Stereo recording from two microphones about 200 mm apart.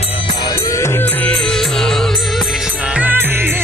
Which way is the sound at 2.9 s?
10° right (ahead or behind).